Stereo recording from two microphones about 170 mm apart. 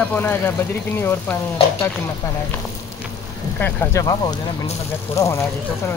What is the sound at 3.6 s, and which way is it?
Speech, 15° left (ahead or behind).